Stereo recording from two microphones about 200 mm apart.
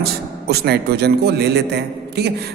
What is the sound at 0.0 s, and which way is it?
A man's voice, 55° right (ahead or behind).